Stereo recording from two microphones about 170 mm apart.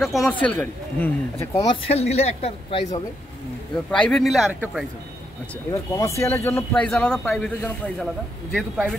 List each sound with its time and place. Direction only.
0.0 s a man's voice: centre (ahead or behind)
1.7 s speech: 35° left (ahead or behind)
3.9 s speech: 5° left (ahead or behind)
5.7 s a man's voice: 20° left (ahead or behind)